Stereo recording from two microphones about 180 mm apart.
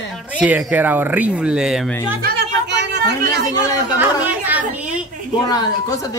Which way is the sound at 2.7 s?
70° right (ahead or behind).